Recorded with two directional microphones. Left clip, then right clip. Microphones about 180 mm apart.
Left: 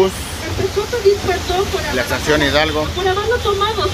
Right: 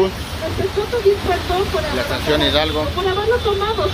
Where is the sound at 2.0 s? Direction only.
5° left (ahead or behind).